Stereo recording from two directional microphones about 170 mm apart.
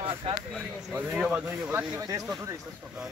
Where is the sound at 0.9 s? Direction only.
10° right (ahead or behind).